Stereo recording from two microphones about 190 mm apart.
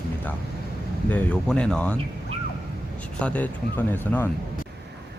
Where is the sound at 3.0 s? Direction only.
5° left (ahead or behind).